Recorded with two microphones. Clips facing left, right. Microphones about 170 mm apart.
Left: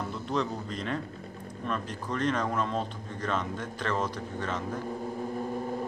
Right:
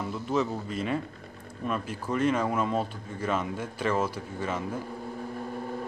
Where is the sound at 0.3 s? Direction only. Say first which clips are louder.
Right 3 dB; 5° right (ahead or behind).